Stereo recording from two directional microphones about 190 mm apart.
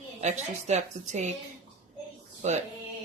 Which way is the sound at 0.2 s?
35° right (ahead or behind).